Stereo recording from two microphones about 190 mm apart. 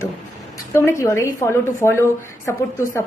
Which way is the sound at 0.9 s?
15° left (ahead or behind).